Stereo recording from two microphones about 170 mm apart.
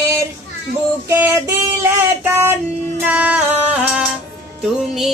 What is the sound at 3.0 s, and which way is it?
Music, 10° right (ahead or behind).